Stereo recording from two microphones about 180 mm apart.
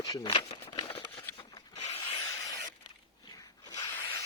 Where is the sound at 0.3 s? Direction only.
30° left (ahead or behind).